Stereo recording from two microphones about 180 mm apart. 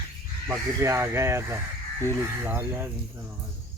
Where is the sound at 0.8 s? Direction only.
15° right (ahead or behind).